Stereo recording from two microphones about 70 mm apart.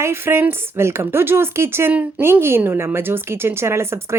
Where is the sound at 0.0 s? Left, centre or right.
Right.